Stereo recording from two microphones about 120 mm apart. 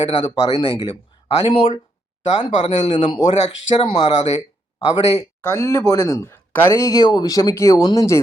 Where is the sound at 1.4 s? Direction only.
55° left (ahead or behind).